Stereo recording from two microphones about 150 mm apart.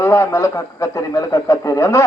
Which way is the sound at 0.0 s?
20° left (ahead or behind).